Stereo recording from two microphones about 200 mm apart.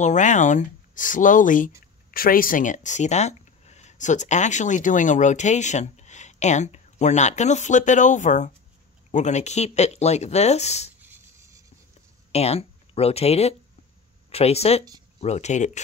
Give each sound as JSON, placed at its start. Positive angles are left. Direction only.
{"t": 0.0, "sound": "speech", "side_deg": 40}
{"t": 11.3, "sound": "writing", "side_deg": -15}
{"t": 12.3, "sound": "speech", "side_deg": 30}